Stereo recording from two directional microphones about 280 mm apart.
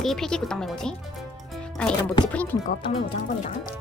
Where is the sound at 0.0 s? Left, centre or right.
Centre.